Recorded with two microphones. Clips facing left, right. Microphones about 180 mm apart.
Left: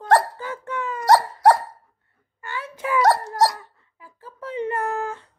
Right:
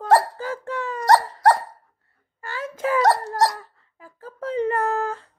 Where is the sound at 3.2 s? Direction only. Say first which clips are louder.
Left 1 dB; 5° left (ahead or behind).